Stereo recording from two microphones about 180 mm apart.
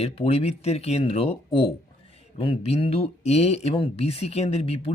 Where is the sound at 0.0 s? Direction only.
35° left (ahead or behind).